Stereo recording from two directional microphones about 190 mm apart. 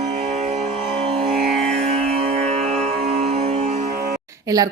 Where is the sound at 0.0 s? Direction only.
40° right (ahead or behind).